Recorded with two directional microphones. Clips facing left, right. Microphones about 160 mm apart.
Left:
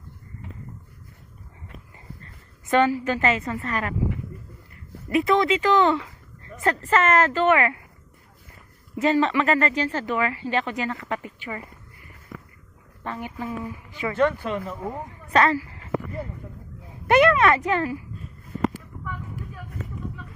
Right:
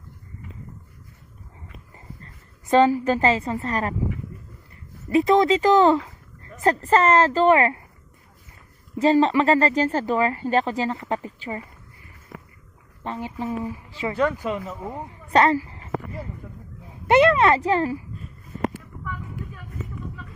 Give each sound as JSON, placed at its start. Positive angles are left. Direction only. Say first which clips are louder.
{"t": 2.2, "sound": "a woman's voice", "louder": "right 1 dB", "side_deg": -30}
{"t": 5.2, "sound": "speech", "louder": "right 3 dB", "side_deg": -35}
{"t": 9.0, "sound": "speech", "louder": "right 3 dB", "side_deg": -30}
{"t": 13.0, "sound": "a woman's voice", "louder": "right 2 dB", "side_deg": -25}
{"t": 14.2, "sound": "speech", "louder": "left 1 dB", "side_deg": -10}
{"t": 15.3, "sound": "a sound", "louder": "right 2 dB", "side_deg": -35}
{"t": 17.1, "sound": "speech", "louder": "right 1 dB", "side_deg": -25}